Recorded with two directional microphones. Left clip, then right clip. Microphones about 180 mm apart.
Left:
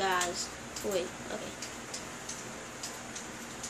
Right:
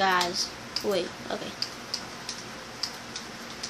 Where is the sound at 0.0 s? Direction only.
50° right (ahead or behind).